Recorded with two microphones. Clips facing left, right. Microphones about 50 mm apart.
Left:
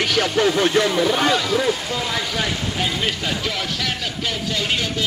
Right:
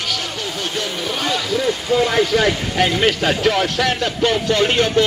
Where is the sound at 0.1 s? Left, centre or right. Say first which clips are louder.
Left 7 dB; left.